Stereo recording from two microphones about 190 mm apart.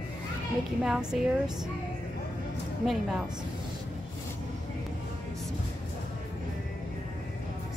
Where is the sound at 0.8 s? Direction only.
5° right (ahead or behind).